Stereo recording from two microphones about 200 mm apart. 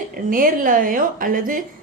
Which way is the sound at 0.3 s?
45° right (ahead or behind).